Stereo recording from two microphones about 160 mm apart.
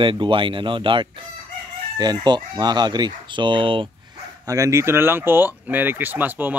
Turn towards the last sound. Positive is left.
turn(degrees=-10)  # may be behind; listen again after turning